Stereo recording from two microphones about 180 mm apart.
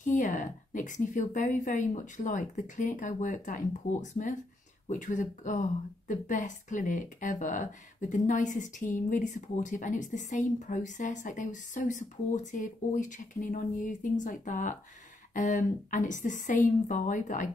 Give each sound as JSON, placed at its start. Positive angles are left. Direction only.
{"t": 0.0, "sound": "speech", "side_deg": 45}